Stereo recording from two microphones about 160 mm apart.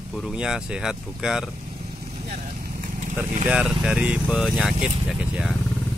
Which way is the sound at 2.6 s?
55° right (ahead or behind).